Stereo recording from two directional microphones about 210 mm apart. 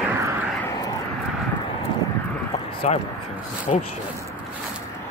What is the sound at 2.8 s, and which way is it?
Speech, 35° left (ahead or behind).